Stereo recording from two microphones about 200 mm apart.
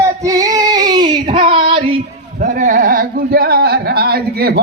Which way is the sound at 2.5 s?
40° right (ahead or behind).